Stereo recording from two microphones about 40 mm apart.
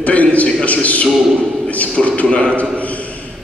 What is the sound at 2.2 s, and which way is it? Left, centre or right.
Speech, left.